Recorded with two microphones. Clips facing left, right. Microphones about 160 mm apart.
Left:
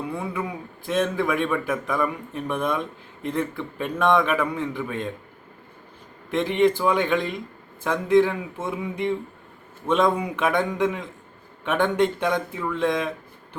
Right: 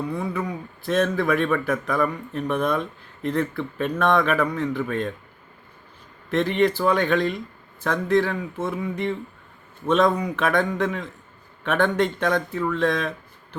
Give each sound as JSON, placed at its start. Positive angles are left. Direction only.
{"t": 0.1, "sound": "a man's voice", "side_deg": 10}
{"t": 6.4, "sound": "a man's voice", "side_deg": 15}